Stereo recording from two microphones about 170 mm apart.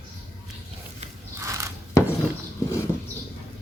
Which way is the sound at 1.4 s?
15° right (ahead or behind).